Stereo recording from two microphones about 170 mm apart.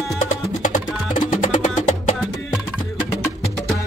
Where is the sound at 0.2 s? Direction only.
50° left (ahead or behind).